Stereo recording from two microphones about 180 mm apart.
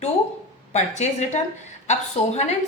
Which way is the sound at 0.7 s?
40° left (ahead or behind).